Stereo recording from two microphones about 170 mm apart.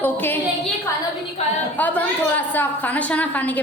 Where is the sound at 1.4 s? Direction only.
40° left (ahead or behind).